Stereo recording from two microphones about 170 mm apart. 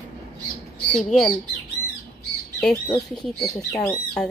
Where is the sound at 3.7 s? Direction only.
10° left (ahead or behind).